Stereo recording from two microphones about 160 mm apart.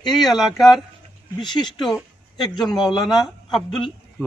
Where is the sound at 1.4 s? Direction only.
25° left (ahead or behind).